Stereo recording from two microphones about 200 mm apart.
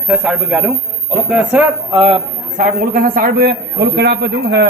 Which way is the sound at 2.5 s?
45° right (ahead or behind).